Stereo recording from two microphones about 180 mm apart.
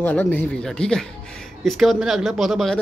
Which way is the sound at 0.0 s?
10° left (ahead or behind).